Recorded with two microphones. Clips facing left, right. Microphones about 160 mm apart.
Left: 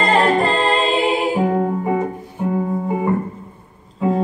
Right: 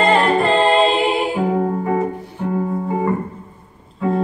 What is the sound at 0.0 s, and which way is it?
Music, 40° left (ahead or behind).